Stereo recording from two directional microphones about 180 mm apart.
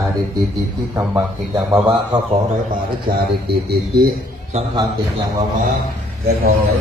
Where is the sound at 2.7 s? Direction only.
60° right (ahead or behind).